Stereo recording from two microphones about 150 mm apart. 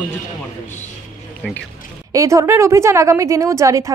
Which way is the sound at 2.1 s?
20° right (ahead or behind).